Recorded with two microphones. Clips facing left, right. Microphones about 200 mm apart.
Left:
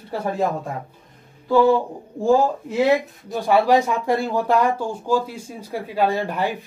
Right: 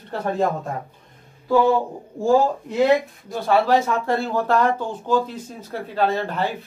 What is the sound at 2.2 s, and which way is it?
Speech, 5° left (ahead or behind).